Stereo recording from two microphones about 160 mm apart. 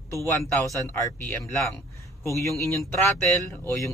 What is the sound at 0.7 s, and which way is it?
Speech, 15° left (ahead or behind).